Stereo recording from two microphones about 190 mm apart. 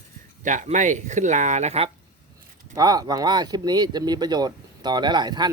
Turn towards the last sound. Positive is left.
turn(degrees=-20)  # may be behind; listen again after turning